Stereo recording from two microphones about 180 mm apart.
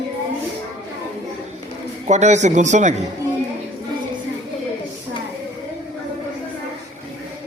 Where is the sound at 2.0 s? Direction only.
40° right (ahead or behind).